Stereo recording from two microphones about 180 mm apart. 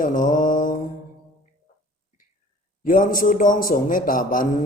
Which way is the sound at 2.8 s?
50° left (ahead or behind).